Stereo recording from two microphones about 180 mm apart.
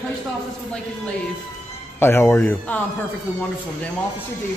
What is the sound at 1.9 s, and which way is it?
Speech, 15° left (ahead or behind).